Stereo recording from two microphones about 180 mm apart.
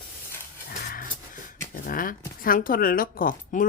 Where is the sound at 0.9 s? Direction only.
50° left (ahead or behind).